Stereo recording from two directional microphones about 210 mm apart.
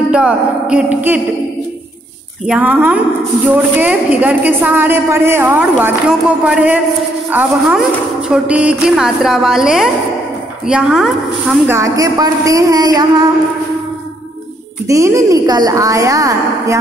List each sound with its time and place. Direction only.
0.1 s a woman's voice: 5° right (ahead or behind)
2.4 s a woman's voice: 5° right (ahead or behind)
14.9 s a woman's voice: 15° right (ahead or behind)